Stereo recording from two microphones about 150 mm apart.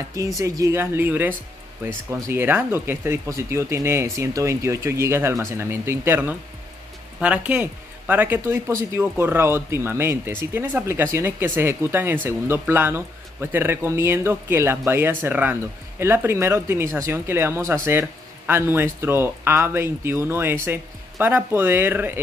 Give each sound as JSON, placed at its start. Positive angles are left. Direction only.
{"t": 0.4, "sound": "speech", "side_deg": -20}